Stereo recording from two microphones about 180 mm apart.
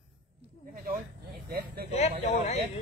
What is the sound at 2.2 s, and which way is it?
Speech, 40° left (ahead or behind).